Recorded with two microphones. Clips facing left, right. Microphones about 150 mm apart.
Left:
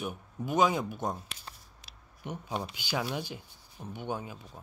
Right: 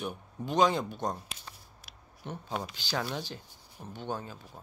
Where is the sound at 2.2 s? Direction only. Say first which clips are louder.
Left 1 dB; 10° left (ahead or behind).